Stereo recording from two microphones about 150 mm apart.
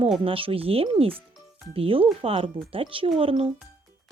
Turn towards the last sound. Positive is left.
turn(degrees=-40)  # may be behind; listen again after turning